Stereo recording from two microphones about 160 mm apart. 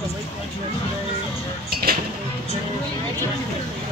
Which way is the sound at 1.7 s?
70° right (ahead or behind).